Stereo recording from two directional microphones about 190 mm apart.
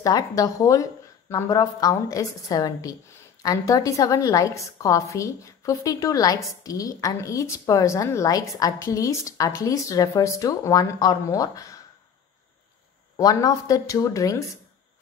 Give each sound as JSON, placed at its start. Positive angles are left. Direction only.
{"t": 0.0, "sound": "a woman's voice", "side_deg": 20}
{"t": 13.1, "sound": "a woman's voice", "side_deg": 20}